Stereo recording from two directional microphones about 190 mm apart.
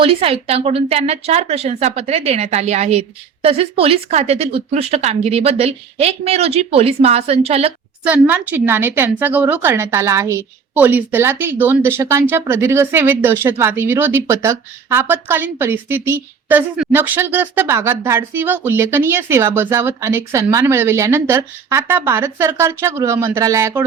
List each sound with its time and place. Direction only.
0.0 s a woman's voice: 30° right (ahead or behind)
8.0 s a woman's voice: 10° right (ahead or behind)